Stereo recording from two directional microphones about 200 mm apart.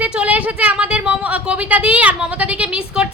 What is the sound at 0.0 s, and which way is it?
A woman's voice, 5° right (ahead or behind).